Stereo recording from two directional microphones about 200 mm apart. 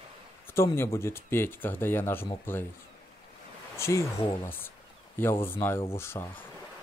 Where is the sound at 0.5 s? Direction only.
15° left (ahead or behind).